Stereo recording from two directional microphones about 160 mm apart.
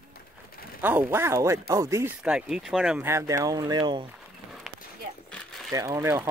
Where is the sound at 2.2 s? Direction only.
5° right (ahead or behind).